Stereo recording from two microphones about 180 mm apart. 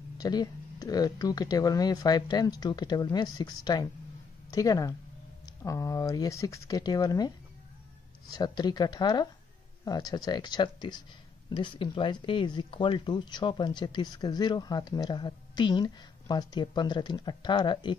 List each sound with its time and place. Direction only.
0.2 s speech: 20° left (ahead or behind)